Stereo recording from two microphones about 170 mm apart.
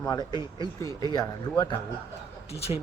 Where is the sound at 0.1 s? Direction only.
25° left (ahead or behind).